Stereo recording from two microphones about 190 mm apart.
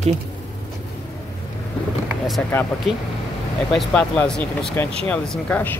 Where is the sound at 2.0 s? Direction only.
Centre (ahead or behind).